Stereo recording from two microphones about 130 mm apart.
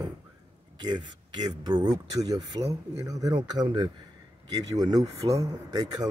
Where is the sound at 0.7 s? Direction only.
35° right (ahead or behind).